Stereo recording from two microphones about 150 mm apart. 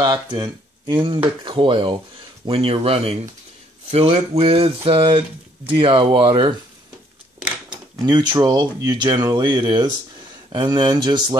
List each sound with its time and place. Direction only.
0.0 s speech: 30° right (ahead or behind)
7.7 s speech: 30° right (ahead or behind)